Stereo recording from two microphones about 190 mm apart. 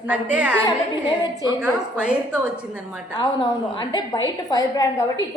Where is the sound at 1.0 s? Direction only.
25° left (ahead or behind).